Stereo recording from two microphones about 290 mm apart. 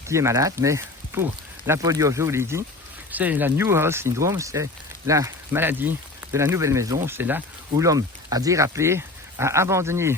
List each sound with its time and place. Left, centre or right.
0.1 s speech: centre